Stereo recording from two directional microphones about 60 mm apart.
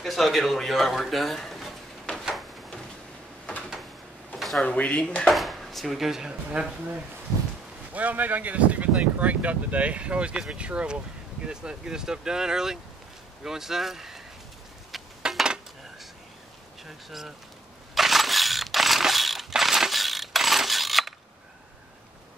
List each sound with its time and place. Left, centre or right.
0.0 s a man's voice: centre
4.6 s speech: left
5.3 s speech: centre
7.9 s speech: right; by 14.2 s centre
15.2 s cutlery: centre
16.8 s speech: centre
17.9 s mechanisms: centre